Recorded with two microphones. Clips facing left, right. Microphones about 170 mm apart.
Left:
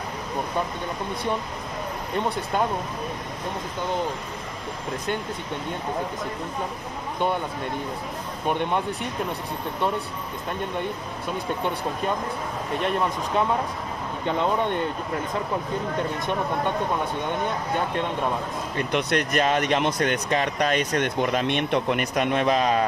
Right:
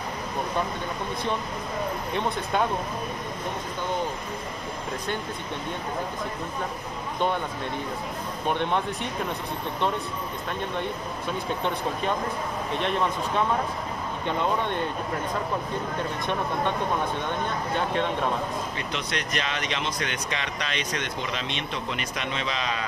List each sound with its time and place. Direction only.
18.8 s speech: 55° left (ahead or behind)